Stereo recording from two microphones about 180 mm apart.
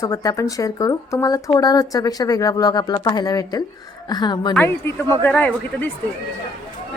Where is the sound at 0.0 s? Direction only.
20° left (ahead or behind).